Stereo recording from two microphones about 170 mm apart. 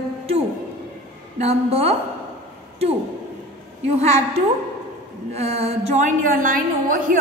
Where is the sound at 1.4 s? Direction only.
35° right (ahead or behind).